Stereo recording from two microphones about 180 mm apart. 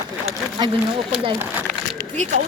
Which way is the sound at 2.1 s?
40° right (ahead or behind).